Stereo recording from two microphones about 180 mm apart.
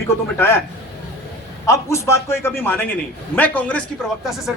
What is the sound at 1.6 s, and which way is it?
A man's voice, 15° left (ahead or behind).